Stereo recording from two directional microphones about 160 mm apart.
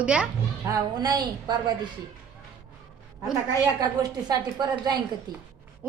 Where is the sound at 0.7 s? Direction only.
25° right (ahead or behind).